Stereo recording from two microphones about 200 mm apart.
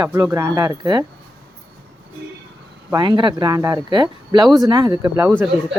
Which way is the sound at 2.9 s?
20° right (ahead or behind).